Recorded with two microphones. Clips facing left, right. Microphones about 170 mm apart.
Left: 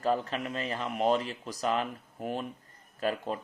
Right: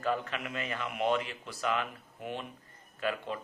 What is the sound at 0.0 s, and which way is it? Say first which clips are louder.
A man's voice: left 3 dB; 35° left (ahead or behind).